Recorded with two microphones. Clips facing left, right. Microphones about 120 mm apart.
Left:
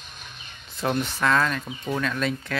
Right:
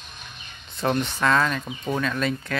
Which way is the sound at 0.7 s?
Centre (ahead or behind).